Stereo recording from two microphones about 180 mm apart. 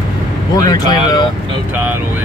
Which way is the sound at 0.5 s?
20° left (ahead or behind).